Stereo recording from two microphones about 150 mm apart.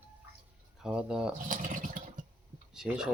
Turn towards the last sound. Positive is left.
turn(degrees=-5)  # may be behind; listen again after turning